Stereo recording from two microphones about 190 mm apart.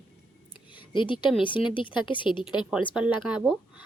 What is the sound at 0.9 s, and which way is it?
A woman's voice, 25° left (ahead or behind).